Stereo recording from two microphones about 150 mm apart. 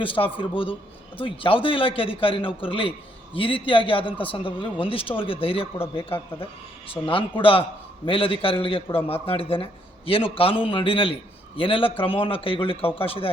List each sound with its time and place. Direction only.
0.0 s a man's voice: 35° left (ahead or behind)